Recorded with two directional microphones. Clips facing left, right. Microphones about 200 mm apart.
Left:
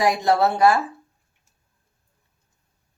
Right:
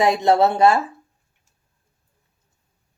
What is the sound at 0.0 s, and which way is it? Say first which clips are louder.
Speech: right 3 dB; 25° right (ahead or behind).